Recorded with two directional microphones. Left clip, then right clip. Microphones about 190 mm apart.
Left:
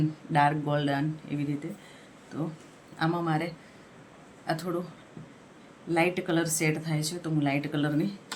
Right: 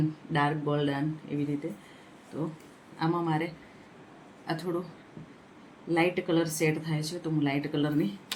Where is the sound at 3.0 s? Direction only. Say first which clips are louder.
Left 1 dB; 30° left (ahead or behind).